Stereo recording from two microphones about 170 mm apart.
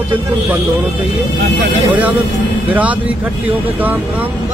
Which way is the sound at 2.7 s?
10° right (ahead or behind).